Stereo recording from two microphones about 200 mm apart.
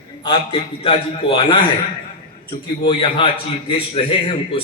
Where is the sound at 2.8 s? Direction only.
25° left (ahead or behind).